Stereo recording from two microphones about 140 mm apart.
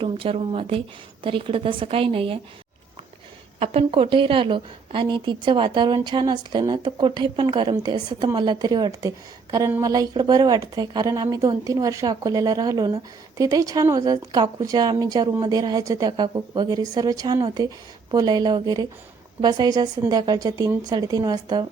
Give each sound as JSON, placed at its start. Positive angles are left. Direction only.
{"t": 0.0, "sound": "a woman's voice", "side_deg": -40}
{"t": 3.6, "sound": "a woman's voice", "side_deg": -45}